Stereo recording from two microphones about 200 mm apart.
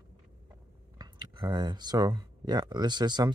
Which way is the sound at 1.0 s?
20° right (ahead or behind).